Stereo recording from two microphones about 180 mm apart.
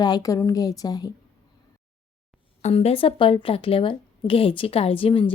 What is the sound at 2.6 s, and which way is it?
Speech, 35° left (ahead or behind).